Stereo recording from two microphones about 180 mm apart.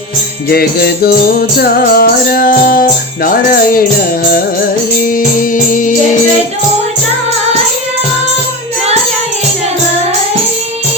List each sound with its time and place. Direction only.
0.5 s music: 60° left (ahead or behind)
5.4 s music: 45° left (ahead or behind)